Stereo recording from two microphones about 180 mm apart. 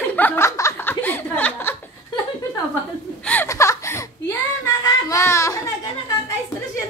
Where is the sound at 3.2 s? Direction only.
10° left (ahead or behind).